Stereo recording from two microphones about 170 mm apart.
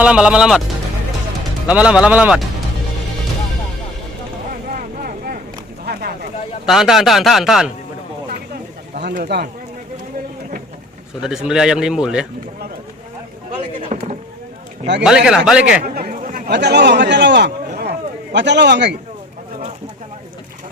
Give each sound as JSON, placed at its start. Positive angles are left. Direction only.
{"t": 0.0, "sound": "speech", "side_deg": -5}
{"t": 1.6, "sound": "a man's voice", "side_deg": -5}
{"t": 4.7, "sound": "vehicle", "side_deg": -55}
{"t": 5.8, "sound": "a sound", "side_deg": -65}
{"t": 6.7, "sound": "speech", "side_deg": 0}
{"t": 9.1, "sound": "speech", "side_deg": -65}
{"t": 11.2, "sound": "speech", "side_deg": -5}
{"t": 13.8, "sound": "a sound", "side_deg": -40}
{"t": 15.0, "sound": "speech", "side_deg": -5}
{"t": 16.0, "sound": "speech", "side_deg": -60}
{"t": 18.3, "sound": "a man's voice", "side_deg": -90}